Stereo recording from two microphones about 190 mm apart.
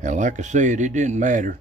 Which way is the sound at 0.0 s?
40° right (ahead or behind).